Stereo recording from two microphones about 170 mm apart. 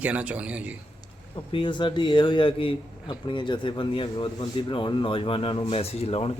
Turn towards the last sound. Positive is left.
turn(degrees=35)  # may be behind; listen again after turning